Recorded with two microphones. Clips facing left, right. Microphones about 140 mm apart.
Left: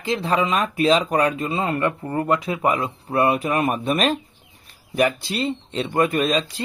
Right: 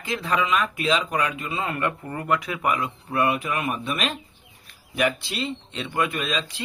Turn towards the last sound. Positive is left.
turn(degrees=40)  # may be behind; listen again after turning